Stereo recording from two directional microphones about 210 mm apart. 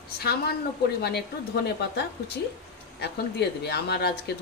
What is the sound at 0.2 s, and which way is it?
Speech, 50° left (ahead or behind).